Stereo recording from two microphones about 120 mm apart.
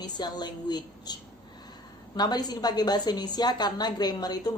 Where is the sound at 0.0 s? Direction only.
35° left (ahead or behind).